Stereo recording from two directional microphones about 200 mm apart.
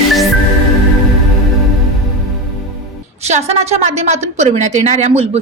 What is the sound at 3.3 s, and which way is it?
A woman's voice, 35° right (ahead or behind).